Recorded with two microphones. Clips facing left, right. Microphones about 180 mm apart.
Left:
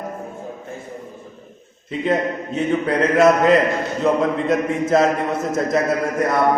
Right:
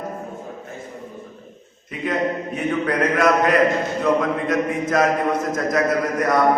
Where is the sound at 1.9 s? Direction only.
25° left (ahead or behind).